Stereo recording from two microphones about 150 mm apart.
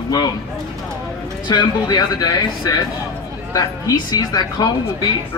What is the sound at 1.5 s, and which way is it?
Speech, 30° left (ahead or behind).